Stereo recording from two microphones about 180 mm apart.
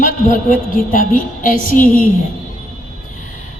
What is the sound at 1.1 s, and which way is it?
Speech, 50° left (ahead or behind).